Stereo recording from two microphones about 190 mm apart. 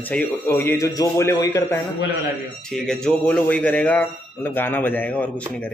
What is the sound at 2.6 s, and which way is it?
Speech, 5° left (ahead or behind).